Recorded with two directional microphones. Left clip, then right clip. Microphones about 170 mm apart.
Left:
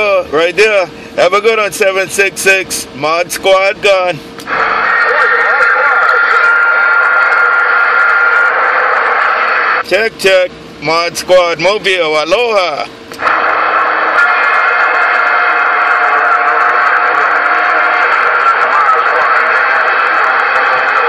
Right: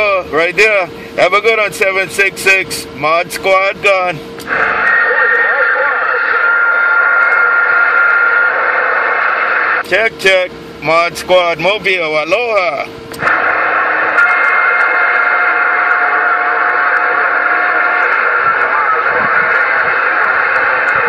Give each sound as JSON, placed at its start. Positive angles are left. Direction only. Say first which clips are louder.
{"t": 0.0, "sound": "speech", "louder": "left 2 dB", "side_deg": 35}
{"t": 3.0, "sound": "vehicle", "louder": "even", "side_deg": 35}
{"t": 11.2, "sound": "speech", "louder": "left 6 dB", "side_deg": 40}
{"t": 13.2, "sound": "radio", "louder": "left 1 dB", "side_deg": 45}